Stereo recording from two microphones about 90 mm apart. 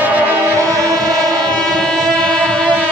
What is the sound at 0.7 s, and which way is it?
Train, 40° right (ahead or behind).